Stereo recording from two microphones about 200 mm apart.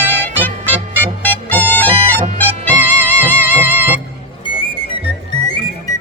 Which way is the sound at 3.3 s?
10° left (ahead or behind).